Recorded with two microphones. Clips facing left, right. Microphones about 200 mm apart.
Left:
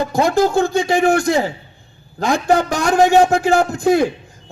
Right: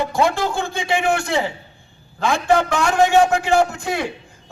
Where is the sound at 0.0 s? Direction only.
40° left (ahead or behind).